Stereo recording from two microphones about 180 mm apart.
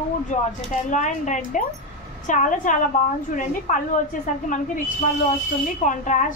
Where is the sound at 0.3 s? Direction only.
40° left (ahead or behind).